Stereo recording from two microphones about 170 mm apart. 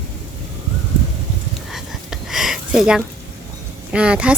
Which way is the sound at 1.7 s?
Centre (ahead or behind).